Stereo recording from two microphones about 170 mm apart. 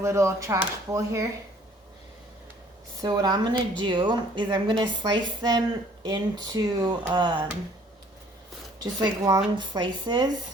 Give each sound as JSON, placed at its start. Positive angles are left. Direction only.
{"t": 0.0, "sound": "speech", "side_deg": -15}
{"t": 3.0, "sound": "a woman's voice", "side_deg": -25}
{"t": 8.8, "sound": "a woman's voice", "side_deg": -20}